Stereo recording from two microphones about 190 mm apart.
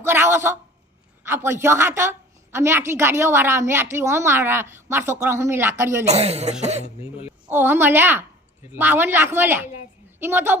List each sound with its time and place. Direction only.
0.0 s a sound: 15° right (ahead or behind)
1.3 s a woman's voice: 15° right (ahead or behind)
6.1 s cough: 35° right (ahead or behind)
7.3 s a child's voice: 10° right (ahead or behind)